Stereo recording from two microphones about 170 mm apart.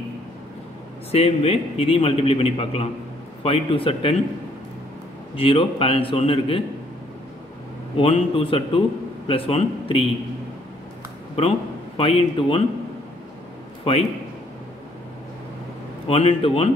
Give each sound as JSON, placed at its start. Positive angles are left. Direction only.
{"t": 1.1, "sound": "a man's voice", "side_deg": 35}
{"t": 5.3, "sound": "a man's voice", "side_deg": 30}
{"t": 8.0, "sound": "a man's voice", "side_deg": 35}
{"t": 12.0, "sound": "a man's voice", "side_deg": 35}
{"t": 13.9, "sound": "a man's voice", "side_deg": 35}
{"t": 16.1, "sound": "a man's voice", "side_deg": 35}